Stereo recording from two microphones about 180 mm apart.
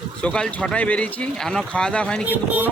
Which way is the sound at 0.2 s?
5° left (ahead or behind).